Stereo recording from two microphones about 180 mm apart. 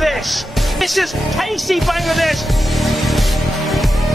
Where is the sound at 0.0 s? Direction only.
Centre (ahead or behind).